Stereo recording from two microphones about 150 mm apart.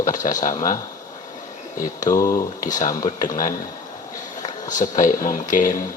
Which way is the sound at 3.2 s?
60° left (ahead or behind).